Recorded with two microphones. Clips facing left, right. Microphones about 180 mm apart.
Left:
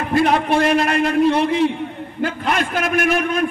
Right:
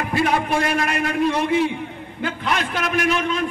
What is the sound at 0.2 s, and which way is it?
A man's voice, 30° left (ahead or behind).